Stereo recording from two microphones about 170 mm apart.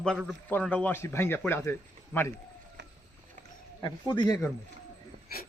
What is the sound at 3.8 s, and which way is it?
Speech, 25° left (ahead or behind).